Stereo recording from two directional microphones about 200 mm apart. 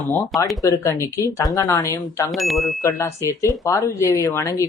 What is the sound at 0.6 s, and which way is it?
Speech, 15° left (ahead or behind).